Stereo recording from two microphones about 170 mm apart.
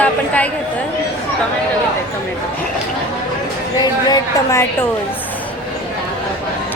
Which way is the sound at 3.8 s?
25° left (ahead or behind).